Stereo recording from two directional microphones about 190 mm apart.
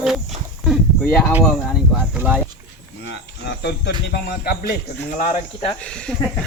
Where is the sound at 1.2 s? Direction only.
10° right (ahead or behind).